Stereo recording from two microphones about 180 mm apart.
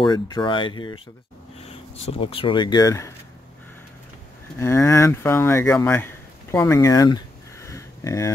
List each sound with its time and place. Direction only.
0.0 s speech: 25° left (ahead or behind)
4.6 s speech: 15° left (ahead or behind)